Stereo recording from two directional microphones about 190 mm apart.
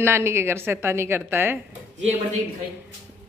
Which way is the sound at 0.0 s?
15° right (ahead or behind).